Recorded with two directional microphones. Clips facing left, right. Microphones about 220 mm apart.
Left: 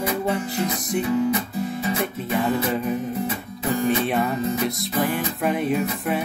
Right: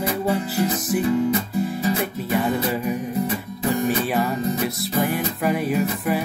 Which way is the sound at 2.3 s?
5° right (ahead or behind).